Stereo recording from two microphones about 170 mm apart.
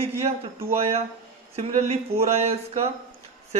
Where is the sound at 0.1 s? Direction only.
15° right (ahead or behind).